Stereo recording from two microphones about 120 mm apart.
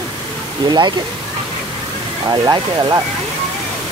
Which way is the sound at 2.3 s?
35° right (ahead or behind).